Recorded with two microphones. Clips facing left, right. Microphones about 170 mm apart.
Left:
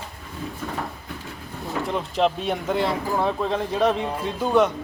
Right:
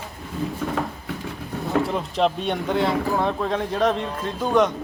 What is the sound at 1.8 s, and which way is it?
Speech, centre (ahead or behind).